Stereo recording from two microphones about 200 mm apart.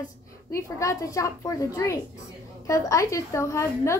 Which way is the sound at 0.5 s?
15° left (ahead or behind).